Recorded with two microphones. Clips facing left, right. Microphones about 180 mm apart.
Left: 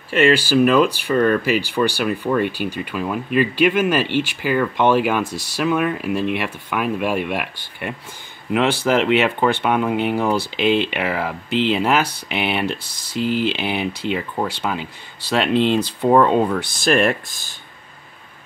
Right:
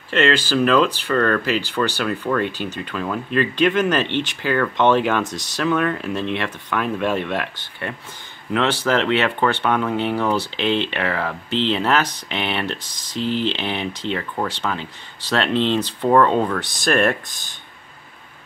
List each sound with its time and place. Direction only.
0.1 s speech: 10° left (ahead or behind)
17.3 s speech: 20° right (ahead or behind)